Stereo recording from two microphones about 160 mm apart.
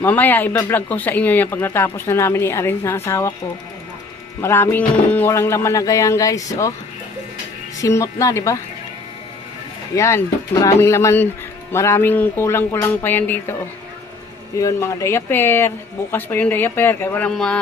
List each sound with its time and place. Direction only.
0.0 s speech: 10° left (ahead or behind)
4.4 s speech: 15° left (ahead or behind)
7.8 s speech: 20° left (ahead or behind)
9.9 s speech: 20° left (ahead or behind)
14.6 s speech: 20° left (ahead or behind)